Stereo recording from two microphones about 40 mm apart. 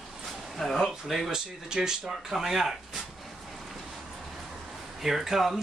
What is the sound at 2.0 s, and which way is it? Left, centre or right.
Speech, centre.